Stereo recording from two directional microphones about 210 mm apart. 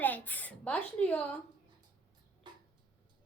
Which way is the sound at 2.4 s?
20° right (ahead or behind).